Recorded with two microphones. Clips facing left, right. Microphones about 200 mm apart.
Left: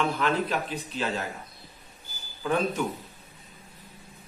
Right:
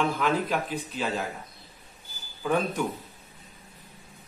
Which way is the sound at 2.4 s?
Centre (ahead or behind).